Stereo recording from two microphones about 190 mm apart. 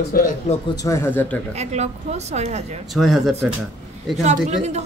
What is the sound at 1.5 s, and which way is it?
A woman's voice, 35° right (ahead or behind).